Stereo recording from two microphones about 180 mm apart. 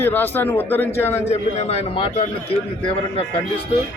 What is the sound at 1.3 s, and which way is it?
Speech, 35° left (ahead or behind).